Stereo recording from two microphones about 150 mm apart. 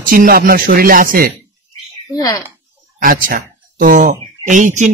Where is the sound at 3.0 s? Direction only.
65° right (ahead or behind).